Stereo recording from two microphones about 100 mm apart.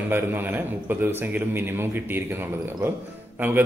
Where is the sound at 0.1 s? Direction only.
20° right (ahead or behind).